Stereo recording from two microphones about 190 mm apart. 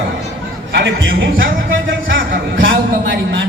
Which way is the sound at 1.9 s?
80° right.